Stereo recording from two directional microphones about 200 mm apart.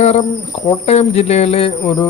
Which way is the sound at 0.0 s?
30° left (ahead or behind).